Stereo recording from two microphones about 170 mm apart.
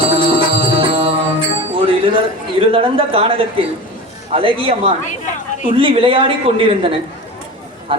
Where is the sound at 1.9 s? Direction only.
30° right (ahead or behind).